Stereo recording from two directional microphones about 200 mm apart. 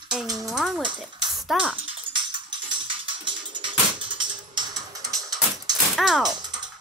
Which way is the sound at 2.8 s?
25° right (ahead or behind).